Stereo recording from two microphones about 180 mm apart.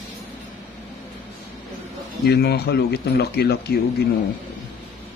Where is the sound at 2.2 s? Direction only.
60° left (ahead or behind).